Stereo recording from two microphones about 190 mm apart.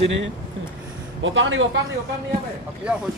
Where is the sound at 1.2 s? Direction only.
85° right.